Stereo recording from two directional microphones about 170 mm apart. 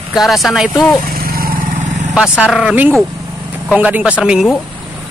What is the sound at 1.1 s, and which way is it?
Vehicle, 60° right (ahead or behind).